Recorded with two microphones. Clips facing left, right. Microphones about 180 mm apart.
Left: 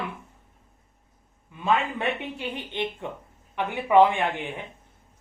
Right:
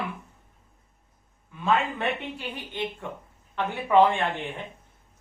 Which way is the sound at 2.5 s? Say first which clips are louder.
Left 2 dB; 20° left (ahead or behind).